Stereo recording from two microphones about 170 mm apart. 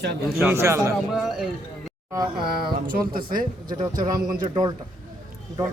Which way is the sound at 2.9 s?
55° right (ahead or behind).